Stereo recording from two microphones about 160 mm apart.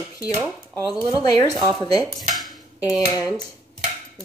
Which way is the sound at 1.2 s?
25° left (ahead or behind).